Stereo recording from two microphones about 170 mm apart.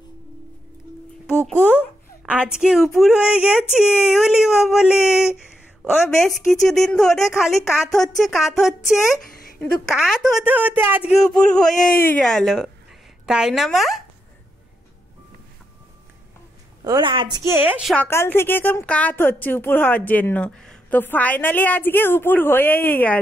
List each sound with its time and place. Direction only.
1.6 s a sound: 10° left (ahead or behind)
2.2 s speech: 5° right (ahead or behind)
10.4 s a woman's voice: 10° right (ahead or behind)
11.2 s speech: centre (ahead or behind)
11.8 s speech: 55° left (ahead or behind)
12.1 s speech: 5° left (ahead or behind)
16.8 s a woman's voice: 25° right (ahead or behind)
17.5 s a woman's voice: 10° right (ahead or behind)
17.9 s a woman's voice: 15° left (ahead or behind)